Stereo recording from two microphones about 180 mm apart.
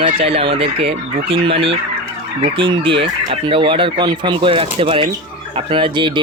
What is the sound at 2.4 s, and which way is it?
Speech, 30° right (ahead or behind).